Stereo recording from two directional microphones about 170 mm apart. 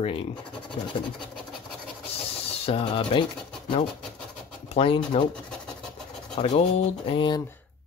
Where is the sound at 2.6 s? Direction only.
30° left (ahead or behind).